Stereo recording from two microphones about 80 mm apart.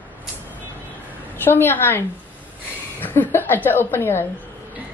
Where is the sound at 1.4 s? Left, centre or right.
Left.